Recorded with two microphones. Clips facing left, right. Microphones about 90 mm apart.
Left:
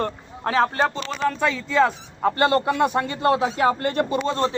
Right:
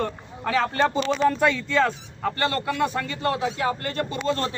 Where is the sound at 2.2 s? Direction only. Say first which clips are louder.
Left 6 dB; 25° left (ahead or behind).